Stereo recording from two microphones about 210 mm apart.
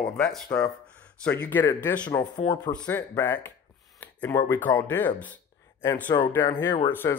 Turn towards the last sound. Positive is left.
turn(degrees=20)  # may be behind; listen again after turning